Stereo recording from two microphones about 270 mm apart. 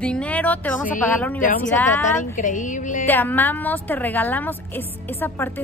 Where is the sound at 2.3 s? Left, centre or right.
Left.